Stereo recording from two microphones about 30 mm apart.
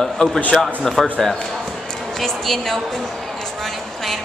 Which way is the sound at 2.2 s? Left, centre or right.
Centre.